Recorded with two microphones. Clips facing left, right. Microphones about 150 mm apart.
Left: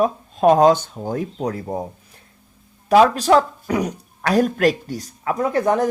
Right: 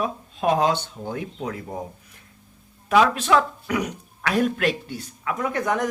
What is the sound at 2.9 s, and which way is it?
Speech, 35° left (ahead or behind).